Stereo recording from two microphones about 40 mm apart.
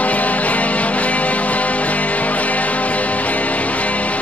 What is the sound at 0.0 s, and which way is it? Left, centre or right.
Music, left.